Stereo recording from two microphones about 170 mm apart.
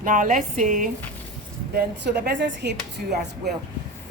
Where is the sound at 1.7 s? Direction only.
80° right.